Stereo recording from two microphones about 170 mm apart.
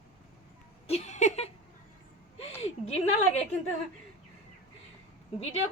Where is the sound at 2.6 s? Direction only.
40° left (ahead or behind).